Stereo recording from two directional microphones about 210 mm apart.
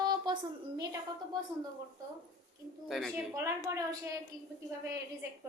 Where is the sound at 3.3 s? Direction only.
15° right (ahead or behind).